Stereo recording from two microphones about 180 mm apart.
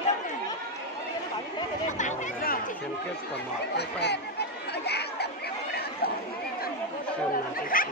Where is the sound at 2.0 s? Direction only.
50° left (ahead or behind).